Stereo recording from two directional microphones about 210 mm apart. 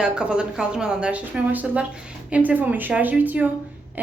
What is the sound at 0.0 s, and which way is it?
A woman's voice, 5° right (ahead or behind).